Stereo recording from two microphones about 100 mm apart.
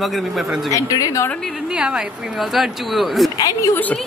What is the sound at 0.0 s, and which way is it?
Speech, centre (ahead or behind).